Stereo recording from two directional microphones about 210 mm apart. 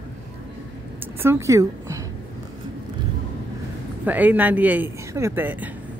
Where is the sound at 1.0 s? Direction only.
10° right (ahead or behind).